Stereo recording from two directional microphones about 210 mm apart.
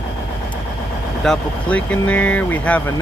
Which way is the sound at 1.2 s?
5° left (ahead or behind).